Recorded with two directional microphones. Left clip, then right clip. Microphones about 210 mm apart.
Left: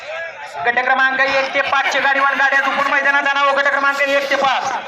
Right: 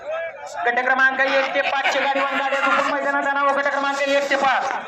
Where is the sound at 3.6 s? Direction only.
5° right (ahead or behind).